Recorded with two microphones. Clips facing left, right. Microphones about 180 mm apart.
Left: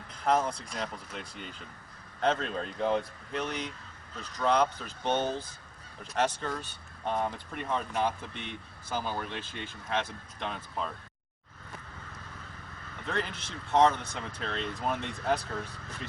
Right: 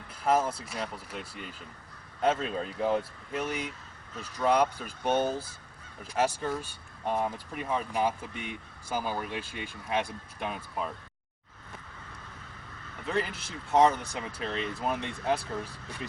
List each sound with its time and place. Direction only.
0.1 s speech: 5° right (ahead or behind)
13.1 s speech: 5° right (ahead or behind)